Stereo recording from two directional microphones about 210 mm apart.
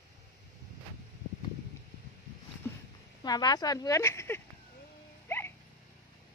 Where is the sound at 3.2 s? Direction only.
20° left (ahead or behind).